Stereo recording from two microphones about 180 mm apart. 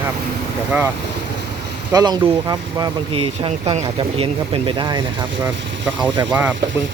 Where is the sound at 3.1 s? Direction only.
30° right (ahead or behind).